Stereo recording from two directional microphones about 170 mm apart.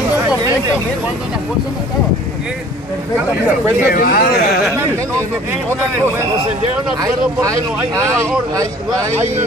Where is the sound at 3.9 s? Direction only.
55° left (ahead or behind).